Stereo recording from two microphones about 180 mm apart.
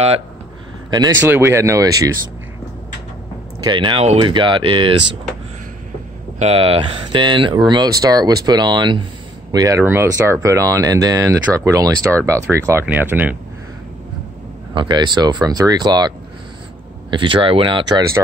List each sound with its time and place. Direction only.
0.8 s speech: 20° right (ahead or behind)
3.6 s speech: 25° right (ahead or behind)
6.4 s speech: 35° right (ahead or behind); by 13.4 s 10° right (ahead or behind)
14.7 s speech: 25° right (ahead or behind)
17.1 s speech: 25° right (ahead or behind)